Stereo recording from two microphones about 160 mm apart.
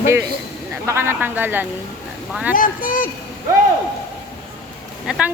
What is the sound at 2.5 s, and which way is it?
Speech, 60° left (ahead or behind).